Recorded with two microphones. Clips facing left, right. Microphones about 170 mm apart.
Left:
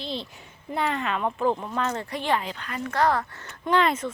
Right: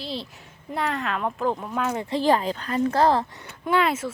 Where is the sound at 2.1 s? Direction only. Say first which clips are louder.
Right 6 dB; 35° right (ahead or behind).